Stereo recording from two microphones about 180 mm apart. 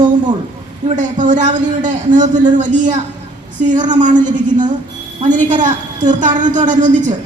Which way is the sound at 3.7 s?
45° right (ahead or behind).